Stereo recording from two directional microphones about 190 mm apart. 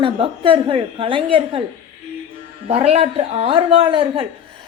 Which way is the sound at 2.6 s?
30° right (ahead or behind).